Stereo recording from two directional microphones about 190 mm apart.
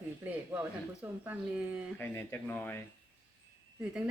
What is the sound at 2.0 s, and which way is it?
Speech, 10° left (ahead or behind).